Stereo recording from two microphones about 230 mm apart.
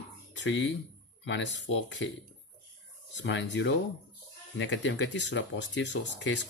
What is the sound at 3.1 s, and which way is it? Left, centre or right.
Speech, left.